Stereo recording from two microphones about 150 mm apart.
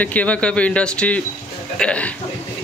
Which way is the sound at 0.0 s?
10° left (ahead or behind).